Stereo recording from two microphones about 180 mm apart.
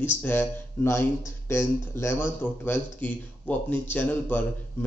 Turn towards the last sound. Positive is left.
turn(degrees=10)  # may be behind; listen again after turning